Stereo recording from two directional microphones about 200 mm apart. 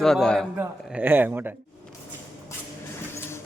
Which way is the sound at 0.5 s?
10° right (ahead or behind).